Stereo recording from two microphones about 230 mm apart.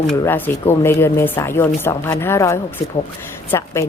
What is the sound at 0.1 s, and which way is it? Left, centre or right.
A woman's voice, centre.